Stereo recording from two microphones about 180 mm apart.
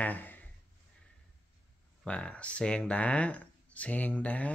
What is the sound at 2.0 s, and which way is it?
Speech, 5° left (ahead or behind).